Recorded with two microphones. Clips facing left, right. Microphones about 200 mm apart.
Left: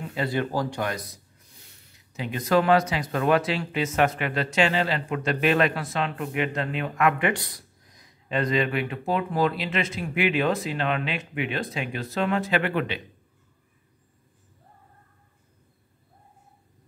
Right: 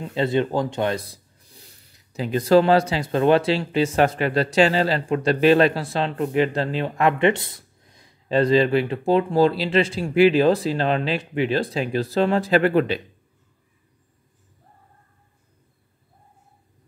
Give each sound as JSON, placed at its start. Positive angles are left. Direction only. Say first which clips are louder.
{"t": 0.1, "sound": "speech", "louder": "right 6 dB", "side_deg": -25}